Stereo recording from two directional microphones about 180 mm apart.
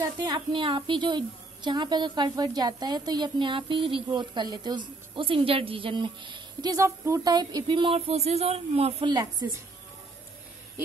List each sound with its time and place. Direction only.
0.2 s a woman's voice: 25° right (ahead or behind)
9.1 s a woman's voice: 20° right (ahead or behind)